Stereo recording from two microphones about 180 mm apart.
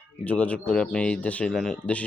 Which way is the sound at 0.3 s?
10° left (ahead or behind).